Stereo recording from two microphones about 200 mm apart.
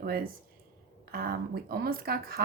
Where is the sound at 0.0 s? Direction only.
50° right (ahead or behind).